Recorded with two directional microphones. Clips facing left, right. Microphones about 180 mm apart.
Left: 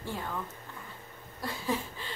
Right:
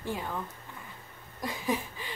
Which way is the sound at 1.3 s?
15° right (ahead or behind).